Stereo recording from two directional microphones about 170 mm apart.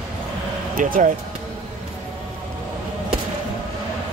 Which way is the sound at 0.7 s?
55° right (ahead or behind).